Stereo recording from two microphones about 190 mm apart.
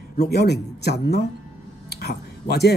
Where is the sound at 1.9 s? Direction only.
60° left (ahead or behind).